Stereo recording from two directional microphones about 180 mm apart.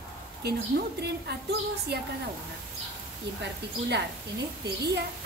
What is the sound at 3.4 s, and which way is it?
Speech, 70° right (ahead or behind).